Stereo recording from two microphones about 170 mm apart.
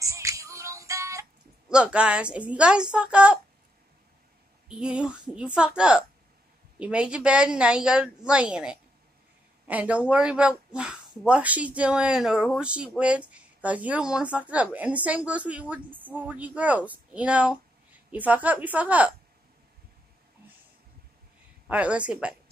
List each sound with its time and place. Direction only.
0.0 s music: 20° right (ahead or behind)
1.7 s speech: 5° right (ahead or behind)
4.6 s a woman's voice: 5° right (ahead or behind)
21.6 s speech: 10° right (ahead or behind)